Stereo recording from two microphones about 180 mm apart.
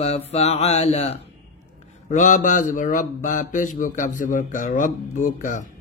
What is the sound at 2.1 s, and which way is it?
Speech, 45° left (ahead or behind).